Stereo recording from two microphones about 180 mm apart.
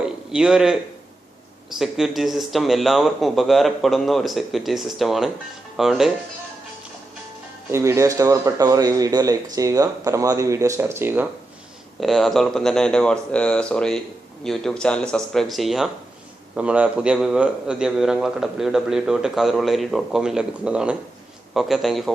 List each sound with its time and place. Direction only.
0.0 s a sound: 5° right (ahead or behind)
1.7 s a man's voice: centre (ahead or behind)
7.7 s a man's voice: 15° right (ahead or behind)
11.9 s a man's voice: centre (ahead or behind)